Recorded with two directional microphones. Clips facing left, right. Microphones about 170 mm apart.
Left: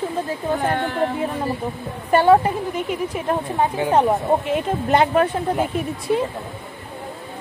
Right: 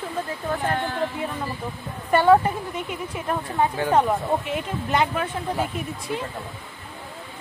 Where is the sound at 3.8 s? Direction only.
20° left (ahead or behind).